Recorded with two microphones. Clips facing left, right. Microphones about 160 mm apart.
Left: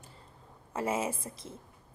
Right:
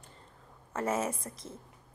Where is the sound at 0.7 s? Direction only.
30° left (ahead or behind).